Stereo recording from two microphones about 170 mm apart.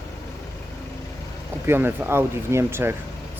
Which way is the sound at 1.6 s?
15° right (ahead or behind).